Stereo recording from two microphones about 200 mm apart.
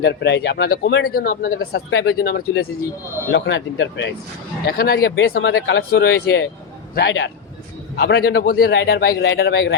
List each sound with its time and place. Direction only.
0.0 s speech: 60° left (ahead or behind)
1.9 s speech: 65° left (ahead or behind)
3.3 s speech: 65° left (ahead or behind)
4.6 s speech: 50° left (ahead or behind)